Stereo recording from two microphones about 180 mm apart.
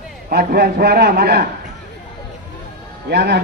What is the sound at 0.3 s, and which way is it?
A man's voice, 60° right (ahead or behind).